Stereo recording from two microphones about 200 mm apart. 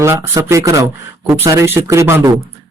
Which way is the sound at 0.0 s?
15° right (ahead or behind).